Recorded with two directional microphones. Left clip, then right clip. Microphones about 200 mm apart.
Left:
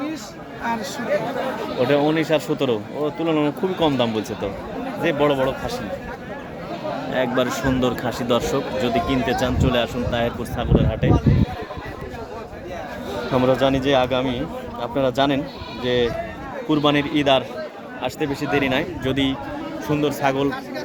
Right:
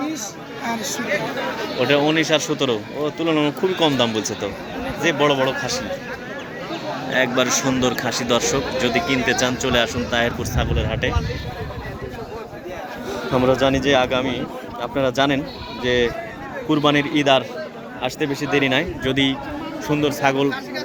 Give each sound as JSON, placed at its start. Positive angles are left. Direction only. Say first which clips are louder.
{"t": 1.8, "sound": "speech", "louder": "right 1 dB", "side_deg": 15}
{"t": 7.1, "sound": "speech", "louder": "right 3 dB", "side_deg": 10}
{"t": 13.3, "sound": "a man's voice", "louder": "right 1 dB", "side_deg": 5}